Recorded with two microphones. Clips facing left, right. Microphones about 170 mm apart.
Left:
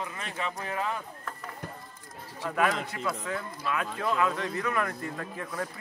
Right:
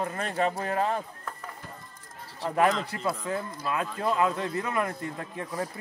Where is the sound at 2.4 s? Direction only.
30° right (ahead or behind).